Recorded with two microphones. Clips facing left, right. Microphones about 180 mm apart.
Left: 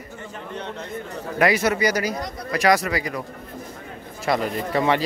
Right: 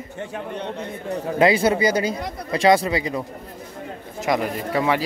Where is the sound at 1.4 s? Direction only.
30° right (ahead or behind).